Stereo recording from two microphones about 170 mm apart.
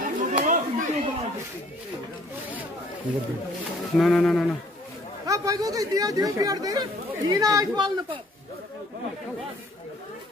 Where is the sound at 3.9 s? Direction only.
Centre (ahead or behind).